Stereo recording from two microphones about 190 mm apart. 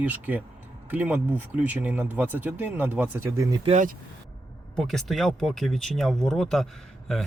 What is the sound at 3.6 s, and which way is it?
Speech, 40° right (ahead or behind).